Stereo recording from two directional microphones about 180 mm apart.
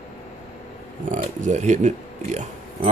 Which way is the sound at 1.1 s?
40° right (ahead or behind).